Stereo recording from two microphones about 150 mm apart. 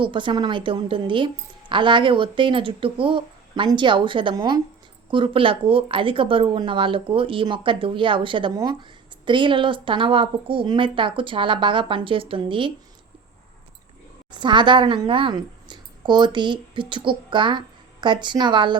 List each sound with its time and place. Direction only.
0.0 s speech: 35° right (ahead or behind)
14.3 s speech: 30° right (ahead or behind)